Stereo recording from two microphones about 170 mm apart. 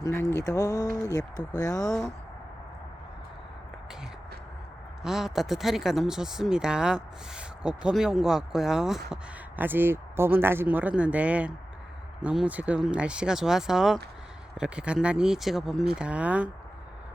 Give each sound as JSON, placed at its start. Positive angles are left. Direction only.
{"t": 0.0, "sound": "speech", "side_deg": 15}
{"t": 1.9, "sound": "speech", "side_deg": 5}
{"t": 5.0, "sound": "speech", "side_deg": 0}